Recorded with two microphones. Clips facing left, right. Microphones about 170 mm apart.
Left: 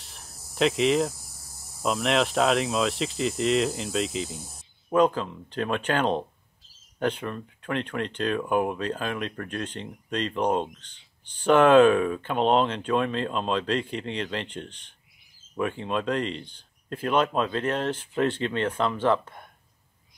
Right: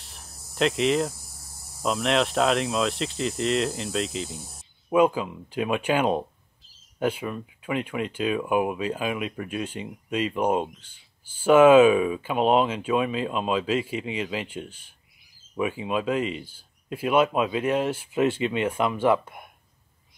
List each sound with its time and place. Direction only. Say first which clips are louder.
0.0 s cricket: even; centre (ahead or behind)
1.8 s speech: even; centre (ahead or behind)